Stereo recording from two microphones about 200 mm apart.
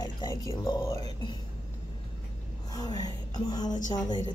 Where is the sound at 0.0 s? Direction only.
20° left (ahead or behind).